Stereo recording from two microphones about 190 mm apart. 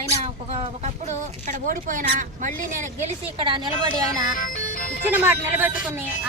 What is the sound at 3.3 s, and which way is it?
Speech, 25° right (ahead or behind).